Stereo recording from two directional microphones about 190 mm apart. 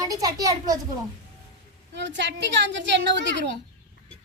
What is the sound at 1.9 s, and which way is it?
A woman's voice, 70° right (ahead or behind).